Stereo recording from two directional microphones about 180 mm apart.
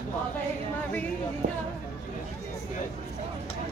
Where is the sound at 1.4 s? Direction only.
50° right (ahead or behind).